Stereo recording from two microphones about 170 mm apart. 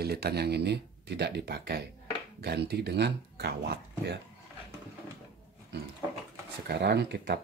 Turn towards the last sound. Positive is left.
turn(degrees=-80)